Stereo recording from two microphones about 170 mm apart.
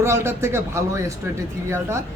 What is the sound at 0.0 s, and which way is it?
Speech, 15° right (ahead or behind).